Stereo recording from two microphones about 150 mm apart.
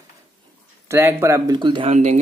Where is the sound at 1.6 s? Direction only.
35° right (ahead or behind).